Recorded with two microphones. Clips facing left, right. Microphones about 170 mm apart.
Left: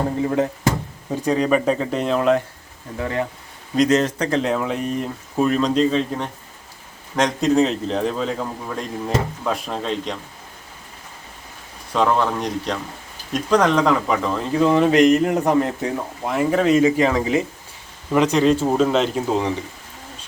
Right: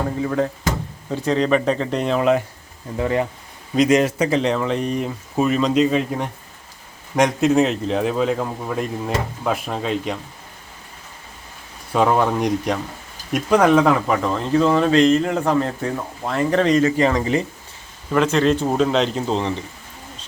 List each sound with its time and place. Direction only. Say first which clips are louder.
0.3 s speech: left 1 dB; 20° left (ahead or behind); by 2.4 s 5° right (ahead or behind)
3.0 s speech: right 3 dB; 20° right (ahead or behind)
11.9 s speech: right 2 dB; 10° right (ahead or behind)
14.6 s speech: left 2 dB; 15° left (ahead or behind)
18.1 s speech: left 1 dB; 15° left (ahead or behind)